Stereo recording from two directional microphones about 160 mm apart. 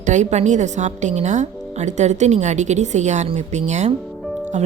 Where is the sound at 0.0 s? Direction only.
50° right (ahead or behind).